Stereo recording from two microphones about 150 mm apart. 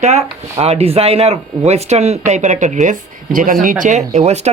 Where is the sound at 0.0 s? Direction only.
50° right (ahead or behind).